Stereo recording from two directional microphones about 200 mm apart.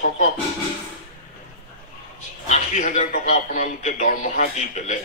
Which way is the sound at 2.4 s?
35° left (ahead or behind).